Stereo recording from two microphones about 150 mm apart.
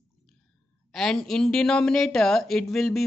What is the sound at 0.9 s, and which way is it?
Speech, 5° left (ahead or behind).